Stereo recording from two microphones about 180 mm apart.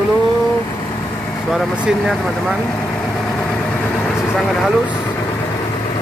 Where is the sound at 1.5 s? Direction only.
Centre (ahead or behind).